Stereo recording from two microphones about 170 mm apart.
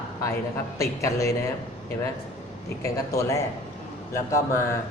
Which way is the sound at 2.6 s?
15° left (ahead or behind).